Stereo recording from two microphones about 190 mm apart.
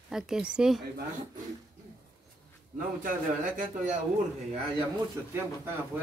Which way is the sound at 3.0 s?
45° right (ahead or behind).